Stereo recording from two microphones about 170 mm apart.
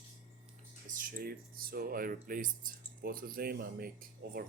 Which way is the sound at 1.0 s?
55° right (ahead or behind).